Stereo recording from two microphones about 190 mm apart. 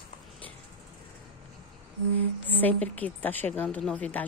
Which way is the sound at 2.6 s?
10° left (ahead or behind).